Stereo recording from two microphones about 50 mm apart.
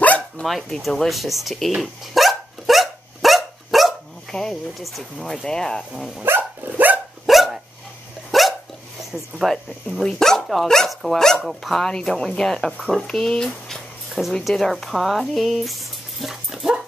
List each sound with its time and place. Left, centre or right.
0.5 s speech: centre
1.8 s dog: centre
4.3 s speech: centre
4.7 s speech: centre
5.2 s speech: centre
5.9 s speech: centre
6.2 s dog: right
7.2 s dog: centre
9.1 s speech: centre
10.0 s speech: centre